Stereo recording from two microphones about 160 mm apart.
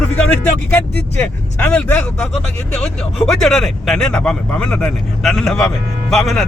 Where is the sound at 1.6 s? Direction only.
10° left (ahead or behind).